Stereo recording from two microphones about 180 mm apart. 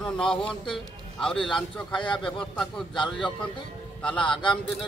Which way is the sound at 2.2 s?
5° left (ahead or behind).